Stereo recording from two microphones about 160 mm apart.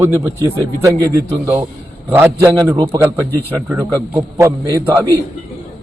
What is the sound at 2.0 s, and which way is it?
A man's voice, 15° right (ahead or behind).